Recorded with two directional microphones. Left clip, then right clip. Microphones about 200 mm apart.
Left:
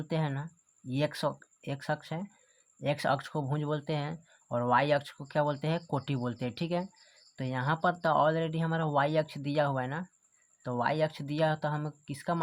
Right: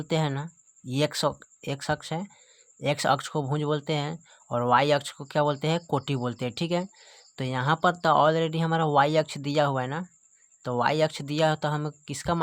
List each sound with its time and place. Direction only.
0.0 s speech: 30° right (ahead or behind)